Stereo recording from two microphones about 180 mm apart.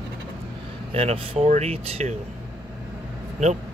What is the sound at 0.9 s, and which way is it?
Speech, 30° right (ahead or behind).